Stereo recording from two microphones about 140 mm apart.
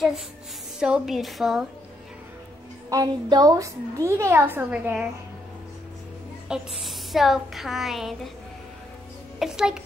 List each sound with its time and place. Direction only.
0.7 s a woman's voice: 5° right (ahead or behind)
2.9 s a woman's voice: 25° right (ahead or behind); by 5.0 s 10° right (ahead or behind)
6.5 s a woman's voice: centre (ahead or behind)
9.4 s a woman's voice: 5° right (ahead or behind)